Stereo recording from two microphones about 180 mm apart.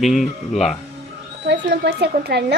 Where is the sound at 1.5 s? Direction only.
70° right (ahead or behind).